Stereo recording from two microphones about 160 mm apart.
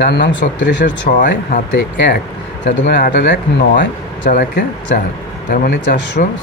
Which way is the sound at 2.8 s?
90° left.